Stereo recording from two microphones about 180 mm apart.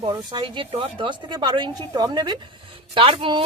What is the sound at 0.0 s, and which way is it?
Speech, 25° right (ahead or behind).